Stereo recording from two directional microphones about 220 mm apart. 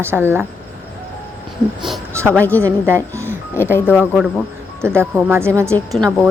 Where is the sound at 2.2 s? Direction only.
5° left (ahead or behind).